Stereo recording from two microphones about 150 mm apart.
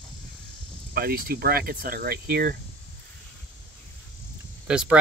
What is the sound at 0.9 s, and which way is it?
Speech, 85° right.